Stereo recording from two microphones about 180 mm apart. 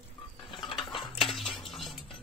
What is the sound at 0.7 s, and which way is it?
Cutlery, 25° left (ahead or behind).